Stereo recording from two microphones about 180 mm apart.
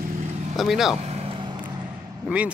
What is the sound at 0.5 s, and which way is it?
Speech, centre (ahead or behind).